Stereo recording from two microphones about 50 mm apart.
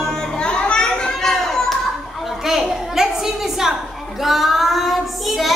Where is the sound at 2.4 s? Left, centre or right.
Centre.